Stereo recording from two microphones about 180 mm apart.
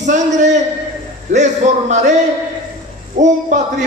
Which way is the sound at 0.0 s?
40° right (ahead or behind).